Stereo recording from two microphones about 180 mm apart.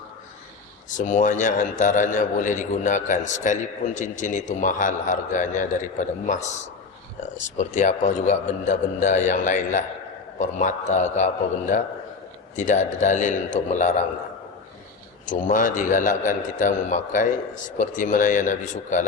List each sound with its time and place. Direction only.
0.9 s a man's voice: 45° left (ahead or behind)
7.6 s a man's voice: 40° left (ahead or behind)
12.5 s a man's voice: 45° left (ahead or behind)
15.3 s a man's voice: 50° left (ahead or behind)